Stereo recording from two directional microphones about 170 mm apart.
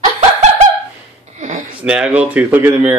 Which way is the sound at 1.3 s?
45° right (ahead or behind).